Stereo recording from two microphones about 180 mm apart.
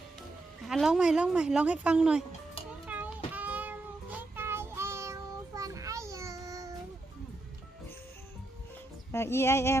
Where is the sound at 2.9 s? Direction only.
10° right (ahead or behind).